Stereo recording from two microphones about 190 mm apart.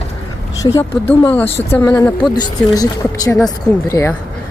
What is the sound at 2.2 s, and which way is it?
Speech, 25° left (ahead or behind).